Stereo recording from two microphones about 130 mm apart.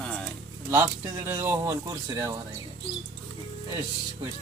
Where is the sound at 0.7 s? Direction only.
20° right (ahead or behind).